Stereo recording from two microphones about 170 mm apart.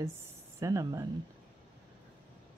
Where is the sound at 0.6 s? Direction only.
20° right (ahead or behind).